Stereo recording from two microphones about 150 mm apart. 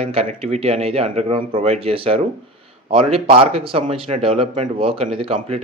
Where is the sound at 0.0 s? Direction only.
40° right (ahead or behind).